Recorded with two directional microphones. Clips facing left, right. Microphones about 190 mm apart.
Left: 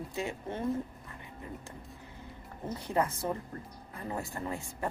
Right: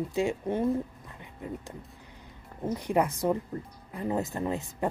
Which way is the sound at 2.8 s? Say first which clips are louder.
Right 4 dB; 15° right (ahead or behind).